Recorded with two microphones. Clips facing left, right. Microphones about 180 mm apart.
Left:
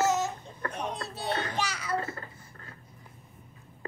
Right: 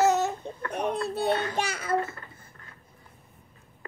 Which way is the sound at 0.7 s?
60° right (ahead or behind).